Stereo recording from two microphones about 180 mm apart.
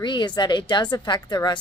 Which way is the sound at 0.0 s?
25° left (ahead or behind).